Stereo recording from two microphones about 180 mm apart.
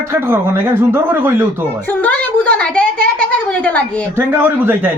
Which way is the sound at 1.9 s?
10° left (ahead or behind).